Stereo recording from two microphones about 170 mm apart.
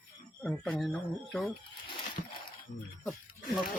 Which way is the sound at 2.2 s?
45° left (ahead or behind).